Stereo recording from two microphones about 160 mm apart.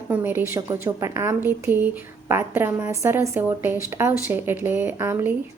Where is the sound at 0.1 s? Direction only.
15° right (ahead or behind).